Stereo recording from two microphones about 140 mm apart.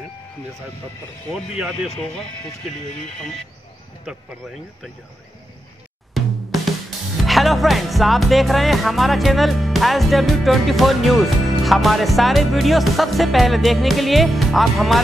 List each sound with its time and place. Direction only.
1.8 s speech: 40° left (ahead or behind)
4.0 s speech: 5° right (ahead or behind)
6.1 s music: centre (ahead or behind)